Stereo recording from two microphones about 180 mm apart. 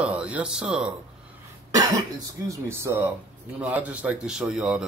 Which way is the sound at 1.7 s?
20° right (ahead or behind).